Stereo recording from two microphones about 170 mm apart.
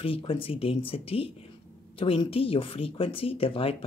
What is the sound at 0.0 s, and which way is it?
A man's voice, 35° left (ahead or behind).